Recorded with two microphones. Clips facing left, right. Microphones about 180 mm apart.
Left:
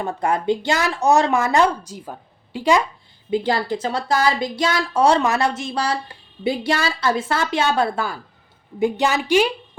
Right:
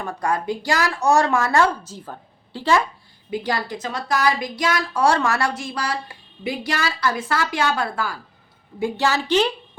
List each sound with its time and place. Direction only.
0.0 s a woman's voice: 25° left (ahead or behind)
3.2 s a woman's voice: 25° left (ahead or behind)